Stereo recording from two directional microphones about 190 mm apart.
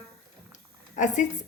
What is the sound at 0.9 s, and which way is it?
Speech, 40° left (ahead or behind).